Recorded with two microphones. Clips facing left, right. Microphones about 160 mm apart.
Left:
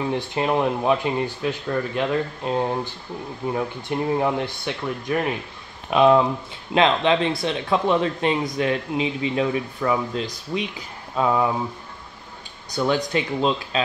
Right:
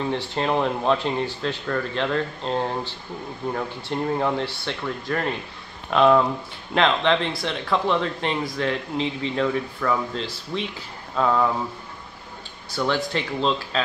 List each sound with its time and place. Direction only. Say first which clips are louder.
0.1 s speech: left 2 dB; 10° left (ahead or behind)
12.7 s speech: left 2 dB; 20° left (ahead or behind)